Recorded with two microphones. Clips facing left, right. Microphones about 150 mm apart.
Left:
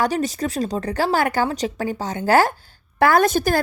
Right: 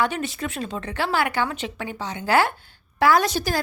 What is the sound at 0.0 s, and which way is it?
A woman's voice, 40° left (ahead or behind).